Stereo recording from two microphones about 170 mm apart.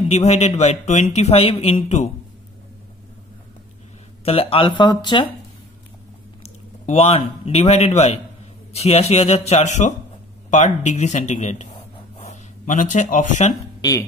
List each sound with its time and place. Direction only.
0.1 s speech: 40° left (ahead or behind)
4.2 s speech: 35° left (ahead or behind)
6.4 s a man's voice: 40° left (ahead or behind)
13.7 s speech: 20° left (ahead or behind)